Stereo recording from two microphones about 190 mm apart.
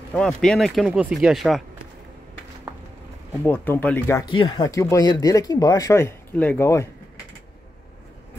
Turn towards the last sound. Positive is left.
turn(degrees=15)  # may be behind; listen again after turning